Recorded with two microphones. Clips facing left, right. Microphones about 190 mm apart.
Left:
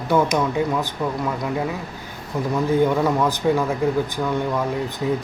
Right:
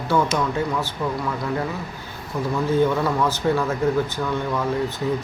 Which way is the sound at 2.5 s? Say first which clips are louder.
Left 1 dB; 15° left (ahead or behind).